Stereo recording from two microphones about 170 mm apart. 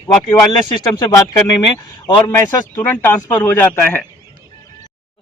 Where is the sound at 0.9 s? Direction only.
20° left (ahead or behind).